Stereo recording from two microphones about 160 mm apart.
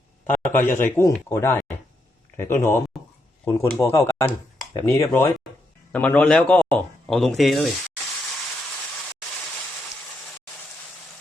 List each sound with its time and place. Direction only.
0.3 s speech: 10° left (ahead or behind)